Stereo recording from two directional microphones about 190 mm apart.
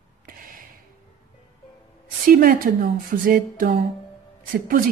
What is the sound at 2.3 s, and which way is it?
Speech, 50° right (ahead or behind).